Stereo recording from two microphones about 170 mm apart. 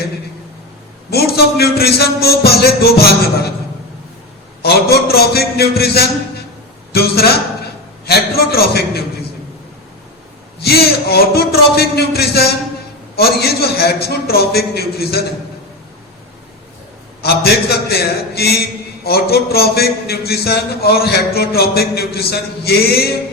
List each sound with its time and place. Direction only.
1.1 s a man's voice: 65° left (ahead or behind)
4.6 s a man's voice: 70° left (ahead or behind)
10.6 s a man's voice: 70° left (ahead or behind)
17.2 s a man's voice: 70° left (ahead or behind)